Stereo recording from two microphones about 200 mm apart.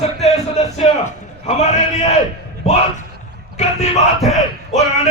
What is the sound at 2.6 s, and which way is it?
Music, 35° left (ahead or behind).